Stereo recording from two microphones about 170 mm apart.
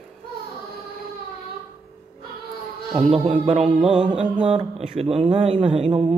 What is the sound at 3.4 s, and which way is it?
Speech, 35° right (ahead or behind).